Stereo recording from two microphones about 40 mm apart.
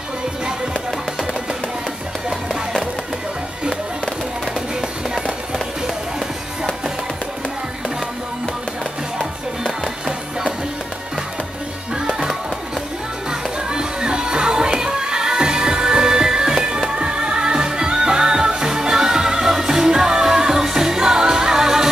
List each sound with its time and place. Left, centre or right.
9.7 s music: centre
12.1 s music: centre
13.3 s music: centre